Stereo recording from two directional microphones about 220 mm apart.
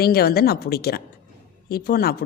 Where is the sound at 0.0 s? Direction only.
45° left (ahead or behind).